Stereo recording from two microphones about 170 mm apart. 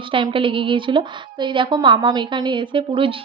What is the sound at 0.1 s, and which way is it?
A woman's voice, 30° right (ahead or behind).